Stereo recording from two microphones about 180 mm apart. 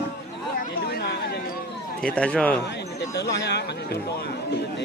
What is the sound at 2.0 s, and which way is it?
Speech, 5° left (ahead or behind).